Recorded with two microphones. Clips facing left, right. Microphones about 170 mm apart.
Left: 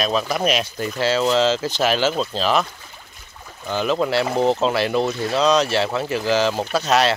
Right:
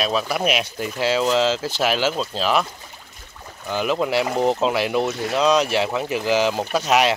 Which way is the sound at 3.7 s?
10° right (ahead or behind).